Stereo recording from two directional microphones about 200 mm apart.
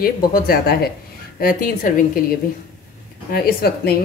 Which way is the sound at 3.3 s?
50° left (ahead or behind).